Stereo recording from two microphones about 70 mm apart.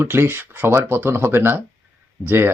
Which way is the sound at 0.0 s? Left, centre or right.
Right.